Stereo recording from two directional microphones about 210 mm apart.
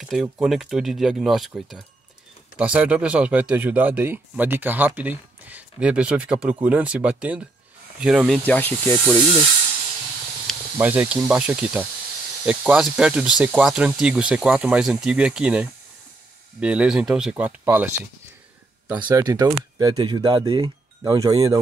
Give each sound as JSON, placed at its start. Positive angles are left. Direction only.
{"t": 0.0, "sound": "speech", "side_deg": 0}
{"t": 10.4, "sound": "speech", "side_deg": -10}
{"t": 19.0, "sound": "speech", "side_deg": -20}